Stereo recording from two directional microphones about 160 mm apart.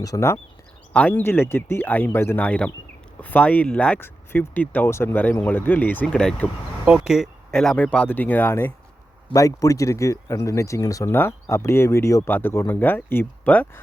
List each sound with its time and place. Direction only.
0.0 s speech: 20° left (ahead or behind)
6.8 s speech: 5° right (ahead or behind)